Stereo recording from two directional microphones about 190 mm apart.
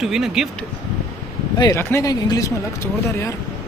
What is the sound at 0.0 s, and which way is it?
Speech, centre (ahead or behind).